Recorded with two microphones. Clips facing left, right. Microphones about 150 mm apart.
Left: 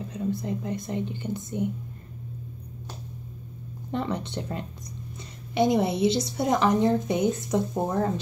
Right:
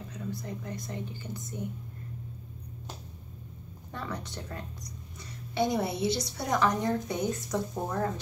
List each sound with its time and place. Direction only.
0.1 s a woman's voice: 25° left (ahead or behind)
3.9 s a woman's voice: 25° left (ahead or behind)